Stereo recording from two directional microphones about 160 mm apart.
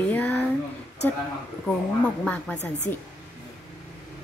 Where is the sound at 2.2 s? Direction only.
5° left (ahead or behind).